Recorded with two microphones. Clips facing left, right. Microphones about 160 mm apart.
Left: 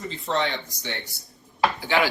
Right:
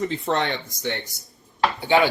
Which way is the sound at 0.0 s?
60° right (ahead or behind).